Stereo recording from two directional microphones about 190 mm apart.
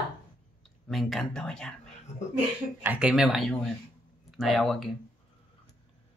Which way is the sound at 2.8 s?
5° right (ahead or behind).